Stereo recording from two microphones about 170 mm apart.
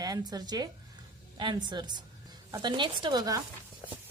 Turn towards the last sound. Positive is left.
turn(degrees=-20)  # may be behind; listen again after turning